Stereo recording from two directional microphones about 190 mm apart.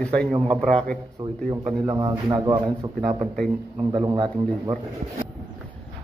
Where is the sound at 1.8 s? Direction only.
20° right (ahead or behind).